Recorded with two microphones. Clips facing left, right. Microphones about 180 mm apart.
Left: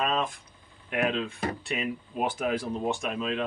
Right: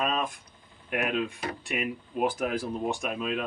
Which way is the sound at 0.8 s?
5° right (ahead or behind).